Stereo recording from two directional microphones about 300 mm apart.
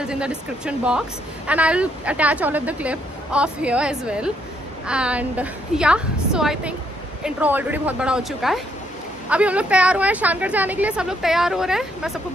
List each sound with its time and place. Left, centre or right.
0.0 s a woman's voice: centre